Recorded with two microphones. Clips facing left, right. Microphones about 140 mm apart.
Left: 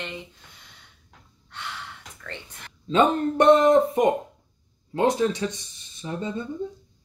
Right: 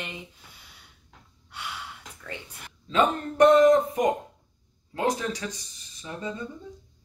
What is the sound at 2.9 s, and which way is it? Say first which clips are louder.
Speech: left 4 dB; 30° left (ahead or behind).